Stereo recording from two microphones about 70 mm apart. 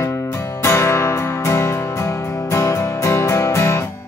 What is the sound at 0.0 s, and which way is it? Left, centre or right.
Music, left.